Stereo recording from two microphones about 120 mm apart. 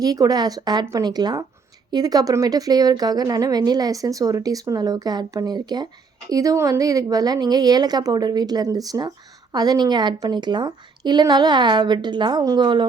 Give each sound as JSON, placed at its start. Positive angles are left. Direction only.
{"t": 0.0, "sound": "a woman's voice", "side_deg": -30}